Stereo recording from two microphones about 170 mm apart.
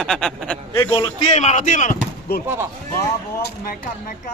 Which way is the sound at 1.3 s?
45° left (ahead or behind).